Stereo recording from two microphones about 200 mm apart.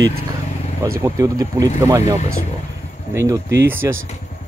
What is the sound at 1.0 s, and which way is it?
Speech, 15° right (ahead or behind).